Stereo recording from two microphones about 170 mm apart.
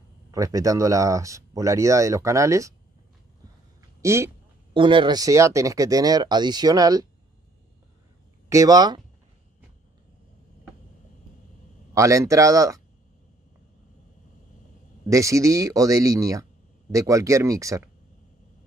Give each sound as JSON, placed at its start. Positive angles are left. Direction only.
{"t": 0.3, "sound": "speech", "side_deg": -20}
{"t": 4.0, "sound": "speech", "side_deg": -15}
{"t": 4.7, "sound": "speech", "side_deg": -30}
{"t": 8.5, "sound": "speech", "side_deg": -20}
{"t": 11.9, "sound": "speech", "side_deg": -20}
{"t": 15.0, "sound": "speech", "side_deg": -20}